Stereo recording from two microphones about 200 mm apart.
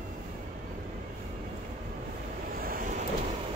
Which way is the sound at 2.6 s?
45° right (ahead or behind).